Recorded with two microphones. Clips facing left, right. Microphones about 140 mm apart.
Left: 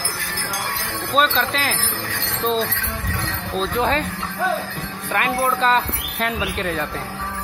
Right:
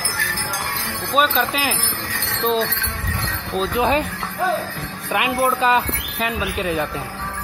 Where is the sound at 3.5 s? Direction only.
10° right (ahead or behind).